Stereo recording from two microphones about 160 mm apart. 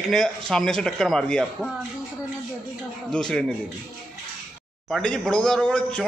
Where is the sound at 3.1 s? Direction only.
5° left (ahead or behind).